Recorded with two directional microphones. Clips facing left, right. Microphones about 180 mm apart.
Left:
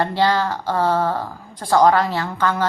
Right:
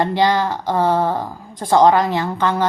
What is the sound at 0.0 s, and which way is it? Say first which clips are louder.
A woman's voice: right 2 dB; 15° right (ahead or behind).